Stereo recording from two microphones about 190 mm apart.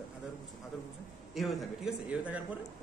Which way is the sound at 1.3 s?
Centre (ahead or behind).